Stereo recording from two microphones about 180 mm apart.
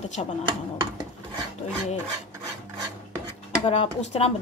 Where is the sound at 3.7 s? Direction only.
35° left (ahead or behind).